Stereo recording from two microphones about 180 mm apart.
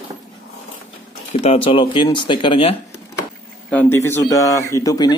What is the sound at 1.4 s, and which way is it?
Speech, 30° left (ahead or behind).